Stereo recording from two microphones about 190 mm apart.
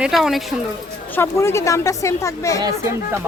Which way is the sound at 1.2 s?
15° left (ahead or behind).